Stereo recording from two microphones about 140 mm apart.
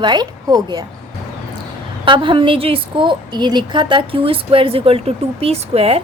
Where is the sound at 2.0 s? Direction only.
35° right (ahead or behind).